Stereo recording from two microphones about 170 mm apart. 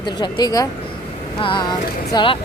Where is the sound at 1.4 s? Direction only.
30° left (ahead or behind).